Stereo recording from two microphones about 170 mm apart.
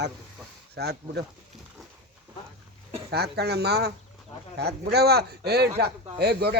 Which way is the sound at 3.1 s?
70° right (ahead or behind).